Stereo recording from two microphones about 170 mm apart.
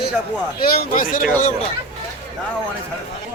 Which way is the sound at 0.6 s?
60° left (ahead or behind).